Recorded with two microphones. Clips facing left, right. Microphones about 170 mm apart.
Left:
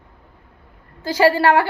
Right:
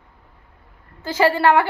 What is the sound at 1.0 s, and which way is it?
Speech, 35° left (ahead or behind).